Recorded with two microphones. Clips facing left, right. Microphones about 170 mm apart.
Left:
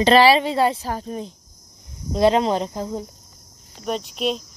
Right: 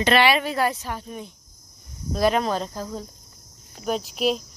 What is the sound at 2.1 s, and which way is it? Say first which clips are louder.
Speech: left 4 dB; 25° left (ahead or behind).